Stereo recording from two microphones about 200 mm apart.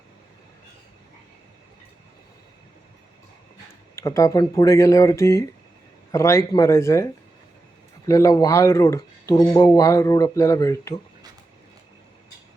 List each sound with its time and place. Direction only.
3.9 s speech: 15° left (ahead or behind)